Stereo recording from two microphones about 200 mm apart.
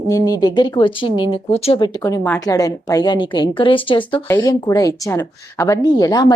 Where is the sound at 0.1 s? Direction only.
20° left (ahead or behind).